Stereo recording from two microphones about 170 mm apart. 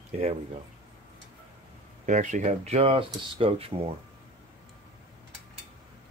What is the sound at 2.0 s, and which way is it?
Speech, 50° right (ahead or behind).